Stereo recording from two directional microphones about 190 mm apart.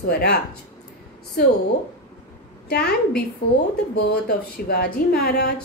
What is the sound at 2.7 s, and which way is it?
Speech, 55° left (ahead or behind).